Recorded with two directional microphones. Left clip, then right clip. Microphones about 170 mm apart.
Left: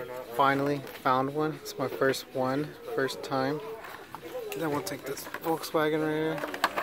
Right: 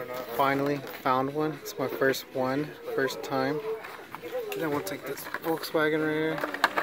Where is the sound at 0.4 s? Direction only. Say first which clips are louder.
Left 1 dB; 5° left (ahead or behind).